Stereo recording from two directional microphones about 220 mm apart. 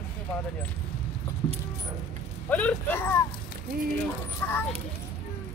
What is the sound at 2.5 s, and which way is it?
Speech, 5° left (ahead or behind).